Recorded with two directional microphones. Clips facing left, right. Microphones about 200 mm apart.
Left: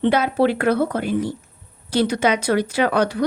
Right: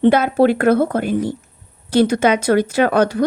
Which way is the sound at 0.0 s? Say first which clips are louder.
Right 4 dB; 50° right (ahead or behind).